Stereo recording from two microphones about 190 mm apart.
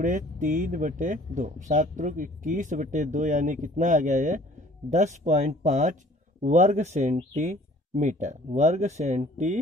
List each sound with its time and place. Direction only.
0.0 s speech: 45° right (ahead or behind)